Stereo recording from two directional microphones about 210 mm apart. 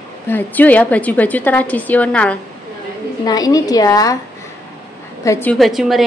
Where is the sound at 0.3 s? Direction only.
10° left (ahead or behind).